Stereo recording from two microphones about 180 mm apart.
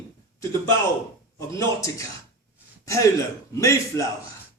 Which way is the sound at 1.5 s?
15° left (ahead or behind).